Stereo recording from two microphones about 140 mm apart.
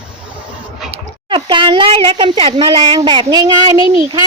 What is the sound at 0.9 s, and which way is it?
Speech, 35° right (ahead or behind).